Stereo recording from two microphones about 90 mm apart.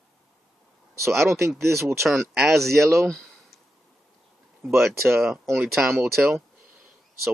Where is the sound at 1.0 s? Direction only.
30° right (ahead or behind).